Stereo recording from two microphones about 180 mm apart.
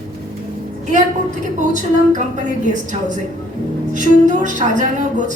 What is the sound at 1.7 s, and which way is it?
Speech, 45° right (ahead or behind).